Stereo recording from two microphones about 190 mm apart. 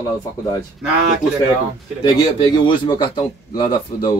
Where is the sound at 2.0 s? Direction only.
25° left (ahead or behind).